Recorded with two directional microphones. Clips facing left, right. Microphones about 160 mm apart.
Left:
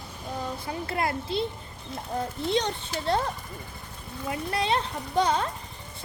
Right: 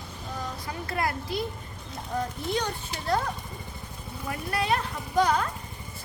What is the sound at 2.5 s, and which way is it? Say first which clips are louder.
Speech: left 5 dB; 25° left (ahead or behind).